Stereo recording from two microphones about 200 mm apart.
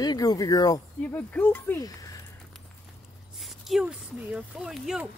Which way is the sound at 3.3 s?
Centre (ahead or behind).